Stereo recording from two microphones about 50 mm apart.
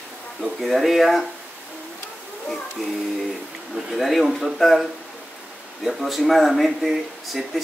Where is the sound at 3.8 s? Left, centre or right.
Centre.